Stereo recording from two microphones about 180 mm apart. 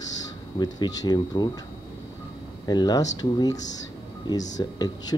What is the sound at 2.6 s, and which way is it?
Speech, 20° left (ahead or behind).